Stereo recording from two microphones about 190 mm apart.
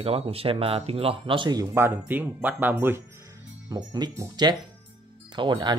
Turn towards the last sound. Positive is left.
turn(degrees=-25)  # may be behind; listen again after turning